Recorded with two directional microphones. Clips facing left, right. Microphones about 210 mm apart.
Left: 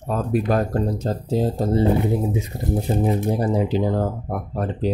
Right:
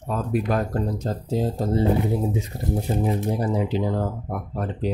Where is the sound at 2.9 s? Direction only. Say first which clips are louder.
Left 3 dB; 25° left (ahead or behind).